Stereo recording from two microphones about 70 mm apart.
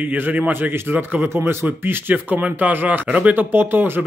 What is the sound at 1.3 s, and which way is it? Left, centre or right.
Speech, right.